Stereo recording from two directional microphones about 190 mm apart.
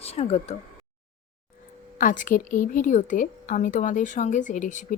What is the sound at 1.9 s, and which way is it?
A woman's voice, 45° left (ahead or behind).